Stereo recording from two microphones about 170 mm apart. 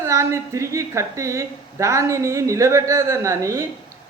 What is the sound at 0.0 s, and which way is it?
A woman's voice, 15° right (ahead or behind).